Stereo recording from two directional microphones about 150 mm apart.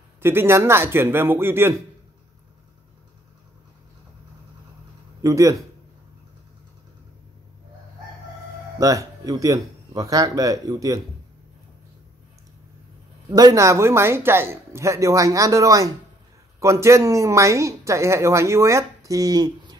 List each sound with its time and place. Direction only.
0.2 s a man's voice: 15° right (ahead or behind)
5.2 s speech: 20° right (ahead or behind)
8.7 s speech: 20° right (ahead or behind)
13.3 s speech: 25° right (ahead or behind)